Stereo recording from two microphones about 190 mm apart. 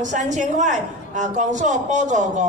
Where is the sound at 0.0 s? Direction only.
40° right (ahead or behind).